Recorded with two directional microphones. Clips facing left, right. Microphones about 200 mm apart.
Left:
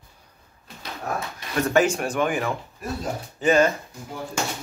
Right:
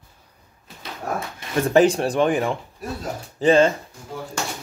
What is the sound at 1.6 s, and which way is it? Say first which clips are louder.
Speech: right 4 dB; 35° right (ahead or behind).